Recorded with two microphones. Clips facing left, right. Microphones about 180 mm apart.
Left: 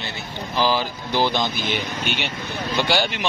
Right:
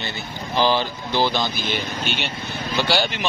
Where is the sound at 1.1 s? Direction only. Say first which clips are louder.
Even; 15° left (ahead or behind).